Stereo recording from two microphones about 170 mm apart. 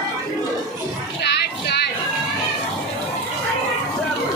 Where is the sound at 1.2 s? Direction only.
75° left (ahead or behind).